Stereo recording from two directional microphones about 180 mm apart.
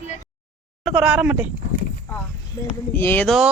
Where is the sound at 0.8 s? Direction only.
5° right (ahead or behind).